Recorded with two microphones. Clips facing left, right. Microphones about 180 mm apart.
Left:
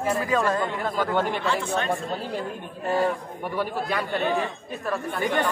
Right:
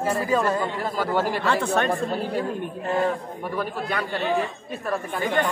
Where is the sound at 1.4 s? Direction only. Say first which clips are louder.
Right 3 dB; 60° right (ahead or behind).